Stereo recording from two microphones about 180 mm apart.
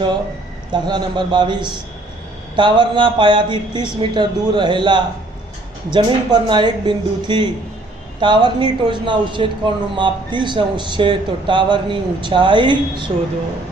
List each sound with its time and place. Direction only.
0.7 s speech: 25° right (ahead or behind)